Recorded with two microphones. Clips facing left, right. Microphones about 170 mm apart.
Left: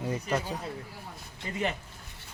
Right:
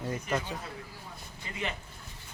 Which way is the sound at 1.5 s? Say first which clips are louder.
Left 7 dB; 40° left (ahead or behind).